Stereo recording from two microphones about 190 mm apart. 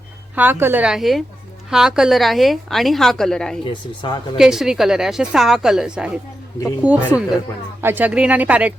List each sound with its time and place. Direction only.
0.3 s a woman's voice: 10° right (ahead or behind)
3.7 s speech: 25° left (ahead or behind)
4.4 s a woman's voice: centre (ahead or behind)